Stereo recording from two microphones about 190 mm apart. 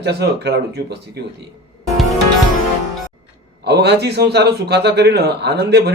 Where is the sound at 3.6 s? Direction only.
60° right (ahead or behind).